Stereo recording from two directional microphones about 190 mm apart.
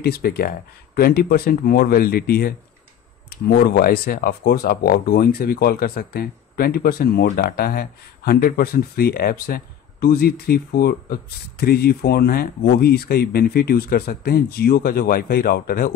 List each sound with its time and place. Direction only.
0.0 s speech: 55° left (ahead or behind)